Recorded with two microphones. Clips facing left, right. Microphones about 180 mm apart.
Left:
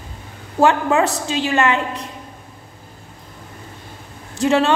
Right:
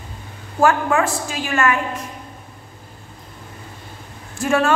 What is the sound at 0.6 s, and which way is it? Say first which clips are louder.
A woman's voice: left 2 dB; 20° left (ahead or behind).